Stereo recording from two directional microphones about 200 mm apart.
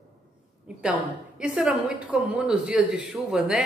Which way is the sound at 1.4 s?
5° right (ahead or behind).